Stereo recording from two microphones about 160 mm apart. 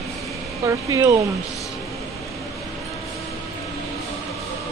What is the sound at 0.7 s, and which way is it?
Speech, 20° right (ahead or behind).